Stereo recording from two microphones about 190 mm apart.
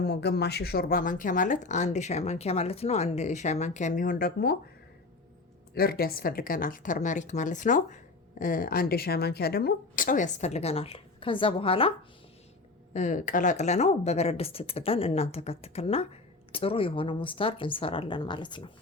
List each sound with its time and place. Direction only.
0.0 s speech: 60° left (ahead or behind)
5.7 s speech: 55° left (ahead or behind); by 11.9 s 30° left (ahead or behind)
12.9 s a woman's voice: 40° left (ahead or behind)